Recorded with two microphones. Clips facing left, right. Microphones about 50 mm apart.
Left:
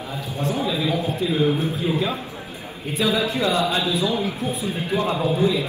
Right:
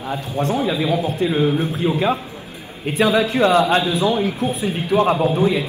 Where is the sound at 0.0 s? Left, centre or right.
Right.